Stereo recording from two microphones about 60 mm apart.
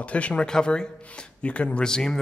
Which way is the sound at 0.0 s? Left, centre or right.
Left.